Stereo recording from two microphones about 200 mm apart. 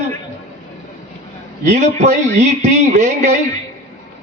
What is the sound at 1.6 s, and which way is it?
A man's voice, 35° right (ahead or behind).